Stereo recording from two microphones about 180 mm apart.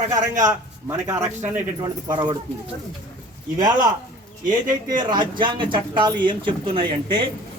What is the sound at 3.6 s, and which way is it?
Speech, 20° right (ahead or behind).